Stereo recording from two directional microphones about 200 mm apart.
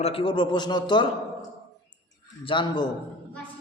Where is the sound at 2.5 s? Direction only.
25° left (ahead or behind).